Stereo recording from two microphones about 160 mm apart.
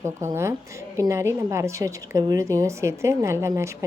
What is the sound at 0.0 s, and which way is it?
A woman's voice, 15° right (ahead or behind).